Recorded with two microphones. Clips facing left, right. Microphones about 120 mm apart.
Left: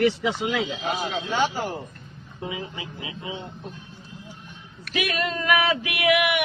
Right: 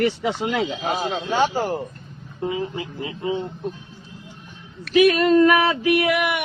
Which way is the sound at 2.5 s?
45° right (ahead or behind).